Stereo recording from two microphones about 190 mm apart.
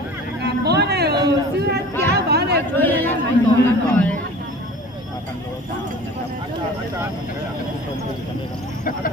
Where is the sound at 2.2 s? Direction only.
60° right (ahead or behind).